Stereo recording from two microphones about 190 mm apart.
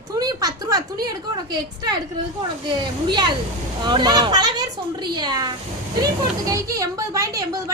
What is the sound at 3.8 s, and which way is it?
A child's voice, 25° right (ahead or behind).